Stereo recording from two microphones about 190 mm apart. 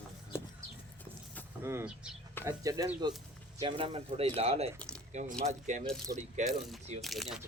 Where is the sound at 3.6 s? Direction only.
30° right (ahead or behind).